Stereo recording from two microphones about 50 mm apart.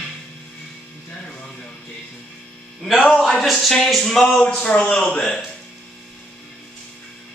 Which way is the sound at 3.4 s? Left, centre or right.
Centre.